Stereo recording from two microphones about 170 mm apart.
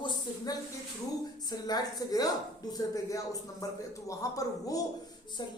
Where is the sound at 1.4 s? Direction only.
25° left (ahead or behind).